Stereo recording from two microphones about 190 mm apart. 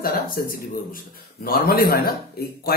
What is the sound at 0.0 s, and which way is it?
Speech, 55° left (ahead or behind).